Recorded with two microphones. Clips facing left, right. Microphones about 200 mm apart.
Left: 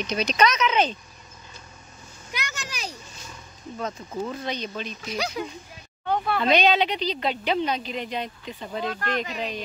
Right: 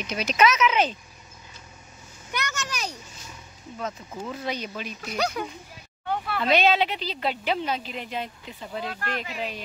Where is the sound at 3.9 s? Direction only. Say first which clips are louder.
Left 4 dB; 5° right (ahead or behind).